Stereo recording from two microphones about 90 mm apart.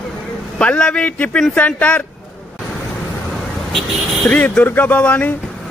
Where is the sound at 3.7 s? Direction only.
Centre (ahead or behind).